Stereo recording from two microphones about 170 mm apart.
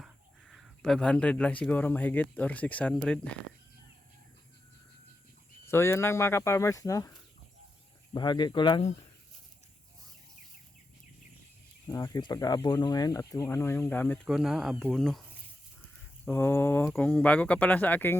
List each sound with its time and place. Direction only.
0.0 s speech: centre (ahead or behind)
5.6 s speech: 15° left (ahead or behind)
11.9 s speech: 20° left (ahead or behind)
14.3 s speech: 5° right (ahead or behind)
16.2 s speech: 10° left (ahead or behind)